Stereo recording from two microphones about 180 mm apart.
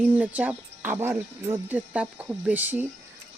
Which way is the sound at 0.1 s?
10° right (ahead or behind).